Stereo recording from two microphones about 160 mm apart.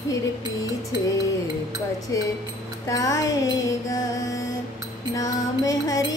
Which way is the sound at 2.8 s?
20° left (ahead or behind).